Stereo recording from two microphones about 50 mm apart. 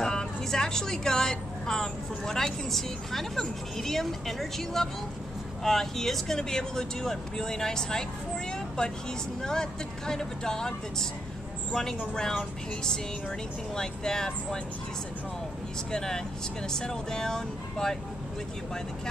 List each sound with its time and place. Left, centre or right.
0.0 s speech: centre
8.5 s vehicle: centre
9.4 s speech: centre
13.7 s speech: centre
15.9 s speech: centre